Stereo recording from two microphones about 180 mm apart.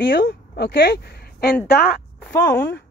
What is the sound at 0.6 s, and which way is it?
Speech, 70° left (ahead or behind).